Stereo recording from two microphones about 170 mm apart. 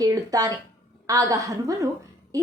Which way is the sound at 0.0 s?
20° right (ahead or behind).